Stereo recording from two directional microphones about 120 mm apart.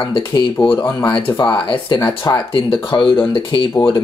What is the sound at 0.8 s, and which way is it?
Speech, 35° left (ahead or behind).